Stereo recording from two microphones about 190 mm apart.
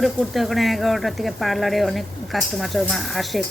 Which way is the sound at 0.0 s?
Centre (ahead or behind).